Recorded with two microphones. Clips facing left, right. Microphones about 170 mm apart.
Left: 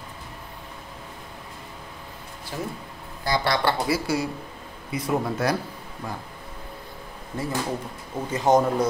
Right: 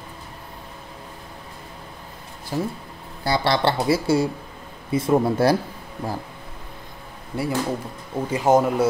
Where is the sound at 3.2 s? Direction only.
25° right (ahead or behind).